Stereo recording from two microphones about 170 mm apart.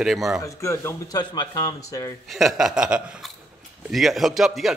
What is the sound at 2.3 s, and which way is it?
A man's voice, centre (ahead or behind).